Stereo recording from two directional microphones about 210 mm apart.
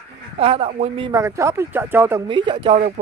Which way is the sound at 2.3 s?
20° right (ahead or behind).